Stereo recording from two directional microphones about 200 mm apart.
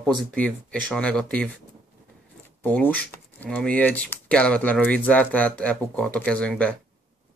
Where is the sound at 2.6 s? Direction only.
10° left (ahead or behind).